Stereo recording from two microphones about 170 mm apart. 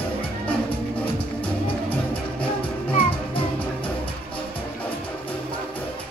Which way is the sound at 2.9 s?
30° left (ahead or behind).